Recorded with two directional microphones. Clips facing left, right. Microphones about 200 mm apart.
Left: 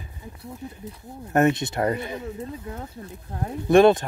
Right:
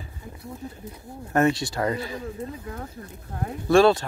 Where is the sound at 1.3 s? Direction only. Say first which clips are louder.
Left 1 dB; 20° left (ahead or behind).